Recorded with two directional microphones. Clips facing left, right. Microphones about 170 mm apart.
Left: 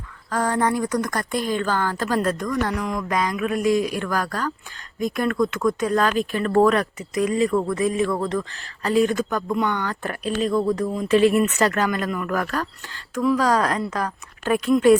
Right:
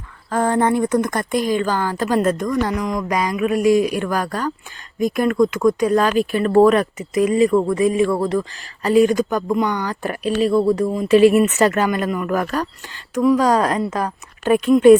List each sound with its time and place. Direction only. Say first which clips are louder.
0.3 s speech: right 4 dB; 25° right (ahead or behind)